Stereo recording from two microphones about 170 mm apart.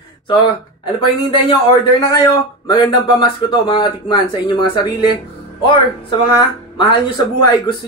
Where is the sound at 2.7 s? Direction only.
25° left (ahead or behind).